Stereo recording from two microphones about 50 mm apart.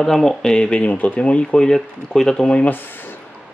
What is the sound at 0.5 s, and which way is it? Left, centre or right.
Speech, centre.